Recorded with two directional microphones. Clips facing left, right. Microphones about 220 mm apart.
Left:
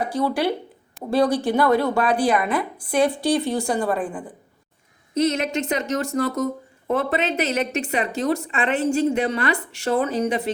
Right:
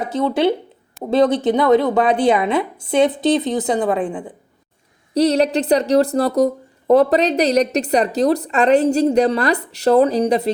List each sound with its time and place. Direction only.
0.0 s a woman's voice: 25° right (ahead or behind)
5.1 s speech: 35° right (ahead or behind)